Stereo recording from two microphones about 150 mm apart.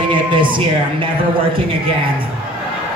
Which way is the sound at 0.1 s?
35° right (ahead or behind).